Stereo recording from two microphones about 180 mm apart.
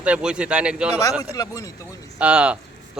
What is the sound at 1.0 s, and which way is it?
Speech, 20° left (ahead or behind).